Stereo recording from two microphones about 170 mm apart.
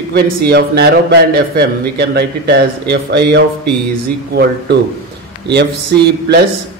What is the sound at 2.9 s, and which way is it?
Speech, 90° right.